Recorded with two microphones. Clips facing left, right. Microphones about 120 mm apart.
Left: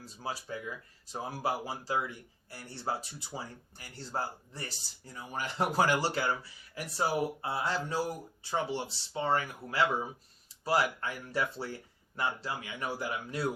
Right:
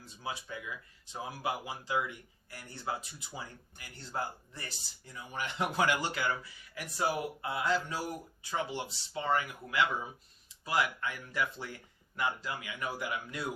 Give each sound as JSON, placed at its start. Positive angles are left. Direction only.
{"t": 0.0, "sound": "speech", "side_deg": 35}